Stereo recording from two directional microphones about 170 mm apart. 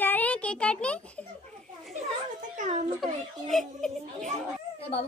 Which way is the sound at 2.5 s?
45° right (ahead or behind).